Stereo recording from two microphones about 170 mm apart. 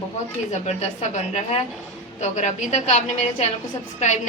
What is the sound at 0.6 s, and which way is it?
A woman's voice, 40° left (ahead or behind).